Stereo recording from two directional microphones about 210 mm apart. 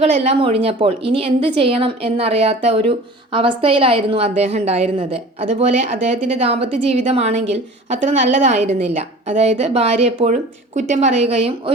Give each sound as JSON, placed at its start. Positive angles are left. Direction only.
{"t": 0.0, "sound": "a woman's voice", "side_deg": -30}